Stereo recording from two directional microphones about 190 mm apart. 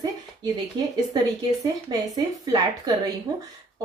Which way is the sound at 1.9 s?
20° right (ahead or behind).